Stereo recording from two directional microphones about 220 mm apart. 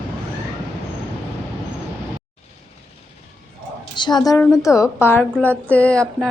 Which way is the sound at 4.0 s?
20° left (ahead or behind).